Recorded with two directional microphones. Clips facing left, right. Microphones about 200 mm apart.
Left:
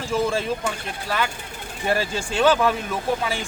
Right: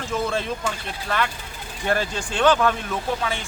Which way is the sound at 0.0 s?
10° left (ahead or behind).